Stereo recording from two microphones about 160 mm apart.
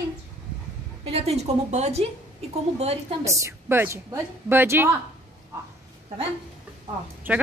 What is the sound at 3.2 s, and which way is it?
A woman's voice, 20° right (ahead or behind).